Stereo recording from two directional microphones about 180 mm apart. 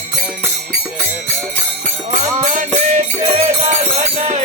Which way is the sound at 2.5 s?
40° right (ahead or behind).